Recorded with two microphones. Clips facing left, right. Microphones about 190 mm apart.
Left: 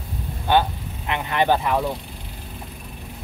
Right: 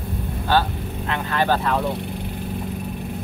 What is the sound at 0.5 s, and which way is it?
Speech, 20° left (ahead or behind).